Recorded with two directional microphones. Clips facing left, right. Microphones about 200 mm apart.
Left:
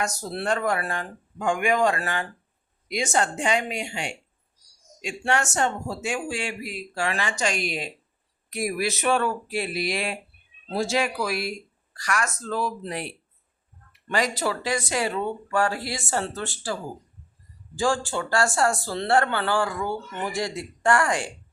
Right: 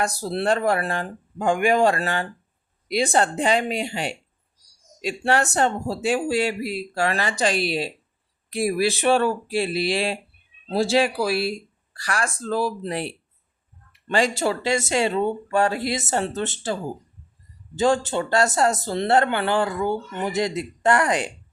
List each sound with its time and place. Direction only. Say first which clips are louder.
0.0 s speech: right 5 dB; 30° right (ahead or behind)
14.1 s speech: right 4 dB; 30° right (ahead or behind)
17.7 s speech: right 4 dB; 20° right (ahead or behind)